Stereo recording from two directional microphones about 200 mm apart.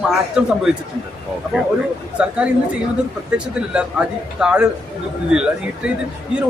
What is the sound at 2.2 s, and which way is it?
Speech, 5° right (ahead or behind).